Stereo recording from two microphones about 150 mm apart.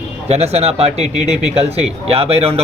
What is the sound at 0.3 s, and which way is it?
A man's voice, 45° right (ahead or behind).